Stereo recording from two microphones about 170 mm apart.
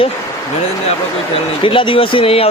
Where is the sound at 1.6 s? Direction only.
30° left (ahead or behind).